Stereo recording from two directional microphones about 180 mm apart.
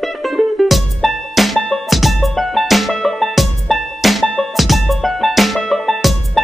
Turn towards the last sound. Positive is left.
turn(degrees=0)  # may be behind; listen again after turning